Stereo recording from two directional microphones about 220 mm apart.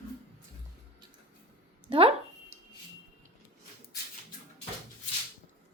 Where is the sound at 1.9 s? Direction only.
25° right (ahead or behind).